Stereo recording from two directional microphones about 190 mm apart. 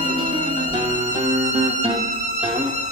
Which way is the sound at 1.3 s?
35° right (ahead or behind).